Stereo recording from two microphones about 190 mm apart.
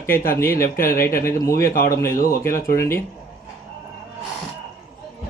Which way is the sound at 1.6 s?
50° left (ahead or behind).